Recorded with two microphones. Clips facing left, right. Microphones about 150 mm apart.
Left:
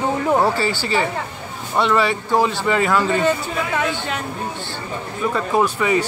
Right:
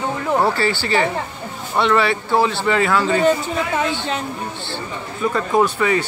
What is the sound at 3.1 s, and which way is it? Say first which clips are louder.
Speech: right 2 dB; 15° right (ahead or behind).